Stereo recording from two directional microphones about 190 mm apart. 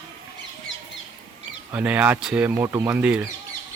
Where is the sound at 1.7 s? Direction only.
5° right (ahead or behind).